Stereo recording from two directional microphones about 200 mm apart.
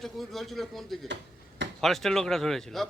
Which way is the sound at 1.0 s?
65° right (ahead or behind).